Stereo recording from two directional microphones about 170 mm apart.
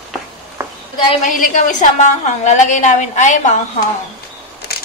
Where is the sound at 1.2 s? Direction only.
55° left (ahead or behind).